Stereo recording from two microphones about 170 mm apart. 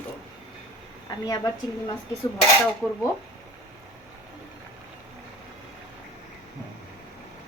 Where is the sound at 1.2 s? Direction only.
25° left (ahead or behind).